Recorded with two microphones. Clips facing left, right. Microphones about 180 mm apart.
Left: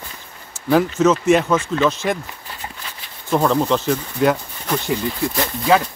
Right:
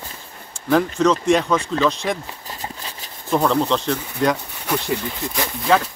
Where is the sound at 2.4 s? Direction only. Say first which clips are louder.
Right 2 dB; 35° right (ahead or behind).